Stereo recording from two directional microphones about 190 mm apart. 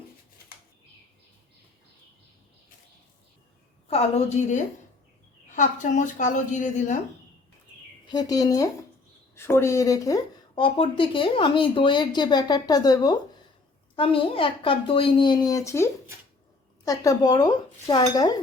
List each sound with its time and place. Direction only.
3.8 s speech: 35° left (ahead or behind)
8.0 s speech: 20° left (ahead or behind)